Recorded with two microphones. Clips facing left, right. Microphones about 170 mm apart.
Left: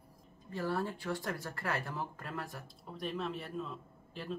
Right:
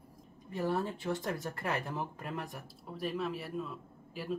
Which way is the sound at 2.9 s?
5° right (ahead or behind).